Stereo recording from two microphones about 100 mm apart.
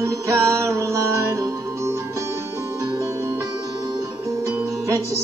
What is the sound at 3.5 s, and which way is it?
Music, 45° right (ahead or behind).